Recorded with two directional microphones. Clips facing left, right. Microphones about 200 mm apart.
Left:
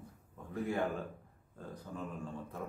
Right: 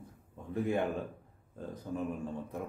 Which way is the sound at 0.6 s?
20° right (ahead or behind).